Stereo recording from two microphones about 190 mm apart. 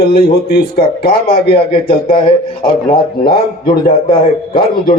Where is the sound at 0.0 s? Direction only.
55° left (ahead or behind).